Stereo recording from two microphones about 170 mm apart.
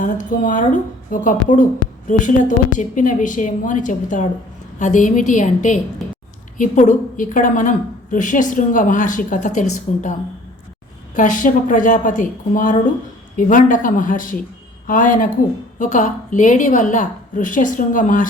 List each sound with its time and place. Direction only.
0.0 s a woman's voice: 50° left (ahead or behind)